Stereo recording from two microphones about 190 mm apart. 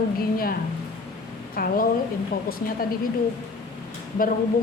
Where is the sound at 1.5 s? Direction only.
50° left (ahead or behind).